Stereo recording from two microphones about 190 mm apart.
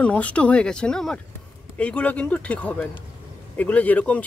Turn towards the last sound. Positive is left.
turn(degrees=10)  # may be behind; listen again after turning